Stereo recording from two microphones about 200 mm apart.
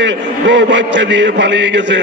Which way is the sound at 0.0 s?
60° right (ahead or behind).